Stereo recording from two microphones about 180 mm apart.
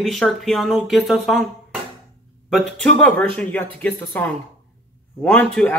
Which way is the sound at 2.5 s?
Centre (ahead or behind).